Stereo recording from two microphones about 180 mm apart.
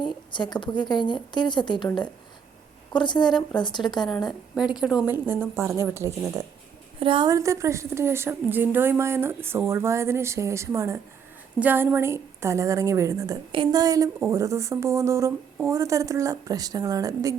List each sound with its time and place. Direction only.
0.0 s a woman's voice: 25° left (ahead or behind)
2.9 s a woman's voice: 25° left (ahead or behind)
4.3 s a woman's voice: 5° right (ahead or behind)
7.0 s a woman's voice: 25° right (ahead or behind)